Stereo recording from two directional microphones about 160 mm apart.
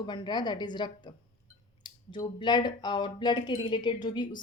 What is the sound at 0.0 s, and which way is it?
A woman's voice, 30° left (ahead or behind).